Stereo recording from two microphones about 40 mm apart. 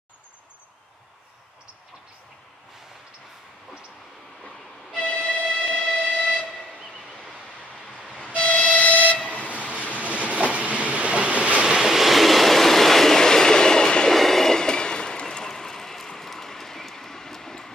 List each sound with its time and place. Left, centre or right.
5.1 s music: left
5.9 s train: left
8.3 s train: left
9.8 s vehicle: left
10.1 s train: right
11.6 s train: centre
14.1 s train: centre